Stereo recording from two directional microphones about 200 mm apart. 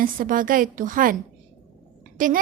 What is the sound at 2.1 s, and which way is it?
Speech, 45° right (ahead or behind).